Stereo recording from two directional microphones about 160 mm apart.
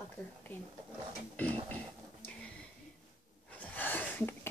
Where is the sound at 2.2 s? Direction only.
10° left (ahead or behind).